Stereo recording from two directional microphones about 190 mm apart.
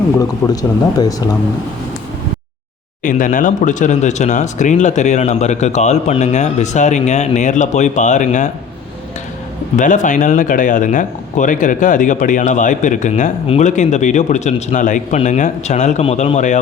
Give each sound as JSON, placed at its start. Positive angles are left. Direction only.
{"t": 0.2, "sound": "speech", "side_deg": 20}
{"t": 3.0, "sound": "speech", "side_deg": 45}
{"t": 9.7, "sound": "speech", "side_deg": 40}